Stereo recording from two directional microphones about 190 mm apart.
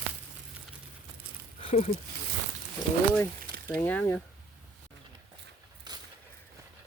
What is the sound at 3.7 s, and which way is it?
Speech, 10° left (ahead or behind).